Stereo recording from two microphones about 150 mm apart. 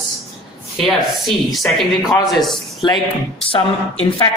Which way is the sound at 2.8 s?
30° left (ahead or behind).